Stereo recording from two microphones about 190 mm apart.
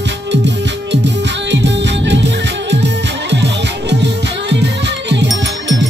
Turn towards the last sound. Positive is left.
turn(degrees=-70)  # may be behind; listen again after turning